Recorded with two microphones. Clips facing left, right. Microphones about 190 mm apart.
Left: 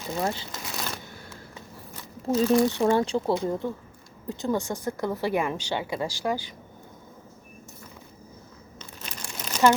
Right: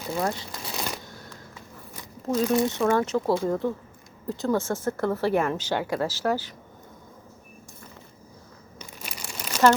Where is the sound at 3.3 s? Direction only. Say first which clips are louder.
Right 2 dB; 20° left (ahead or behind).